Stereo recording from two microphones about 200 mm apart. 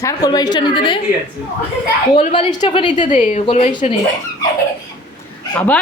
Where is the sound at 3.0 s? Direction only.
40° left (ahead or behind).